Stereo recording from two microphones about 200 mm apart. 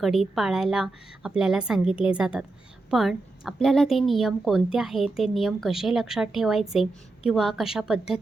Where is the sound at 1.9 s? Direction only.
25° left (ahead or behind).